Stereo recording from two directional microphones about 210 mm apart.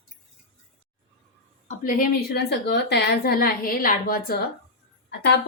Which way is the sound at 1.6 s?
40° left (ahead or behind).